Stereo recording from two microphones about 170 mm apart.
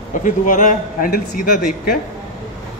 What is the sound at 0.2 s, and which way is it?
Speech, 50° left (ahead or behind).